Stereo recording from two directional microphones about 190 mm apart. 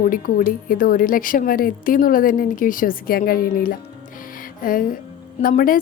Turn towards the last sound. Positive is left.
turn(degrees=50)  # may be behind; listen again after turning